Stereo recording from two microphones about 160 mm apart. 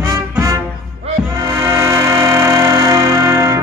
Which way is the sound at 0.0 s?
15° right (ahead or behind).